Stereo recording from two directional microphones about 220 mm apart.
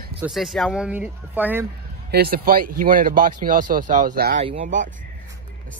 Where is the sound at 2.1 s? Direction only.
45° right (ahead or behind).